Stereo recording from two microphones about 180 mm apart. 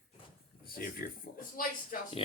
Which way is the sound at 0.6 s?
55° left (ahead or behind).